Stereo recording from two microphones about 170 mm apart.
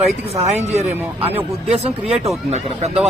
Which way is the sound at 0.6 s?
40° right (ahead or behind).